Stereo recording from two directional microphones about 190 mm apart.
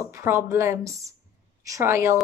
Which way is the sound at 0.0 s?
15° right (ahead or behind).